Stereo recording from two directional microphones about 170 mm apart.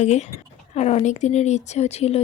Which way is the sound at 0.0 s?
40° left (ahead or behind).